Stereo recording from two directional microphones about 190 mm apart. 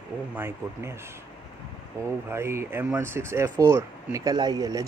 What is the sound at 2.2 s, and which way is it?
Speech, 15° right (ahead or behind).